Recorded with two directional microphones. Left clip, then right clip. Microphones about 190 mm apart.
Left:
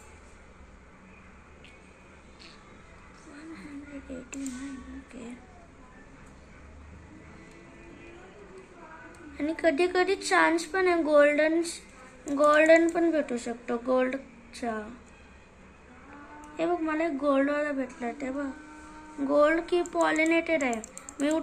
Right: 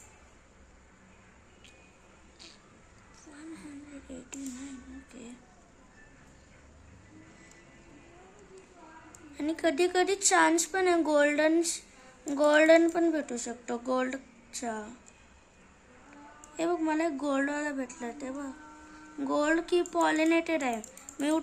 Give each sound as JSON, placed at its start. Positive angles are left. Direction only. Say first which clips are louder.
{"t": 5.2, "sound": "speech", "louder": "left 5 dB", "side_deg": -15}
{"t": 9.4, "sound": "a woman's voice", "louder": "left 2 dB", "side_deg": -20}
{"t": 16.6, "sound": "a woman's voice", "louder": "left 1 dB", "side_deg": -20}
{"t": 19.2, "sound": "a woman's voice", "louder": "left 5 dB", "side_deg": -25}